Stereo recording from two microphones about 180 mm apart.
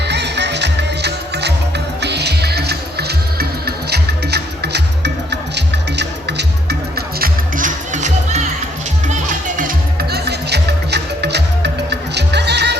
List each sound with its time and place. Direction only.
0.0 s music: 70° right (ahead or behind)